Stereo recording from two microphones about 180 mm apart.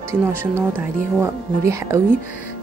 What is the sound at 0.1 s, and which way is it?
Speech, 15° right (ahead or behind).